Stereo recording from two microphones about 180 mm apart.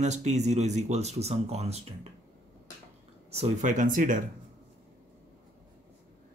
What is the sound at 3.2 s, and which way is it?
Speech, 35° right (ahead or behind).